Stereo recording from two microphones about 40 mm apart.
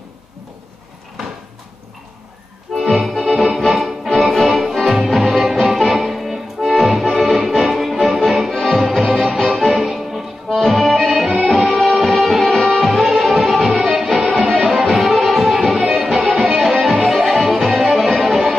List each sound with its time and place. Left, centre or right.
2.9 s music: centre
8.7 s music: centre
9.8 s accordion: centre
11.9 s music: centre
12.2 s music: centre